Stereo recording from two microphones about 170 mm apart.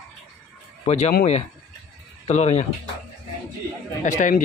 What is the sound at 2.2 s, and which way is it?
Speech, 40° left (ahead or behind).